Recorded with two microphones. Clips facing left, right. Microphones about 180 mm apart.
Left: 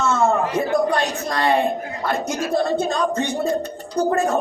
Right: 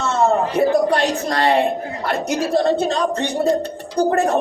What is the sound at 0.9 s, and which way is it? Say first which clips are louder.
Speech: right 3 dB; 65° right (ahead or behind).